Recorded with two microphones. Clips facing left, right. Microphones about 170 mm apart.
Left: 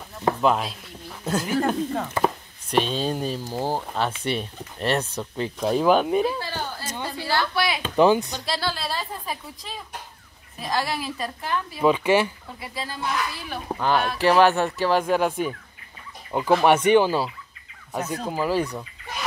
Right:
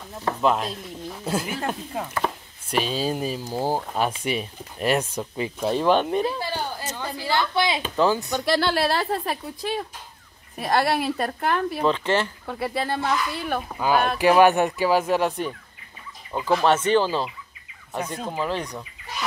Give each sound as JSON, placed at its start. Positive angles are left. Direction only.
{"t": 0.4, "sound": "speech", "side_deg": 0}
{"t": 7.2, "sound": "a woman's voice", "side_deg": -20}
{"t": 7.9, "sound": "speech", "side_deg": 15}
{"t": 8.4, "sound": "a woman's voice", "side_deg": -60}
{"t": 11.8, "sound": "speech", "side_deg": 10}
{"t": 12.4, "sound": "a woman's voice", "side_deg": -65}
{"t": 13.7, "sound": "speech", "side_deg": -5}
{"t": 16.3, "sound": "speech", "side_deg": 15}